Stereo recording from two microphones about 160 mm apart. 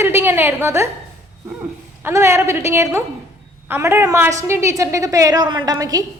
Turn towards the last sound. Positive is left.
turn(degrees=-25)  # may be behind; listen again after turning